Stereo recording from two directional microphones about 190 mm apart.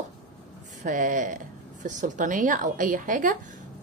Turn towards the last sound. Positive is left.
turn(degrees=-45)  # may be behind; listen again after turning